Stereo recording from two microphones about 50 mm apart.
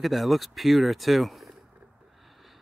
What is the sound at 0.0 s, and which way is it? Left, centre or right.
Speech, centre.